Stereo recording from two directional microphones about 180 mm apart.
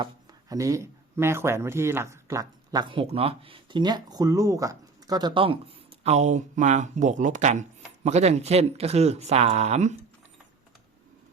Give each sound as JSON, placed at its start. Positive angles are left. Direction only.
{"t": 0.0, "sound": "speech", "side_deg": -20}